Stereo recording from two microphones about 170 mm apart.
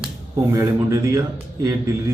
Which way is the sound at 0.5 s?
20° right (ahead or behind).